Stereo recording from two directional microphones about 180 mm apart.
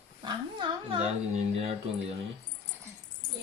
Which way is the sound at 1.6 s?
35° right (ahead or behind).